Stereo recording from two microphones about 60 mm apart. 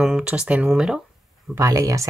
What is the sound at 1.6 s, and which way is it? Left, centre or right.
Speech, right.